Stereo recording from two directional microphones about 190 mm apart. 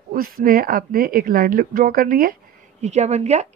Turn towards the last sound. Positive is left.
turn(degrees=-35)  # may be behind; listen again after turning